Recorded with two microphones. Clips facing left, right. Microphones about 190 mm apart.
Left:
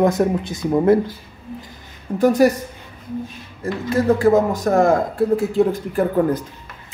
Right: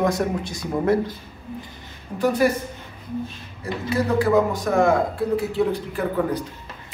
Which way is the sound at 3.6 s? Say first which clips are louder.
Left 4 dB; 45° left (ahead or behind).